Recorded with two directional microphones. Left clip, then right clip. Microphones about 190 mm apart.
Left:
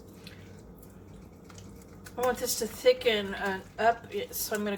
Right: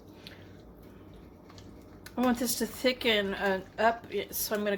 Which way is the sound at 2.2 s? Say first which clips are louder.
Left 1 dB; 50° right (ahead or behind).